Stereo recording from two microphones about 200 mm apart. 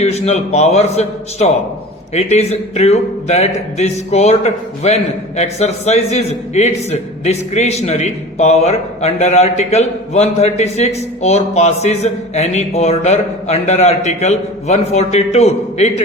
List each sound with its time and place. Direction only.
0.0 s a man's voice: 35° left (ahead or behind)